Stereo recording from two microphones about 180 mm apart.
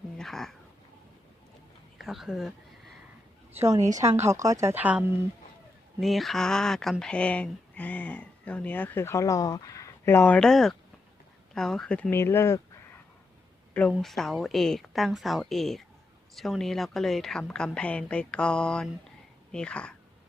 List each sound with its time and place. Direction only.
0.2 s a sound: centre (ahead or behind)
2.0 s speech: centre (ahead or behind)
3.9 s speech: 15° right (ahead or behind); by 12.5 s 15° left (ahead or behind)
13.9 s a woman's voice: centre (ahead or behind)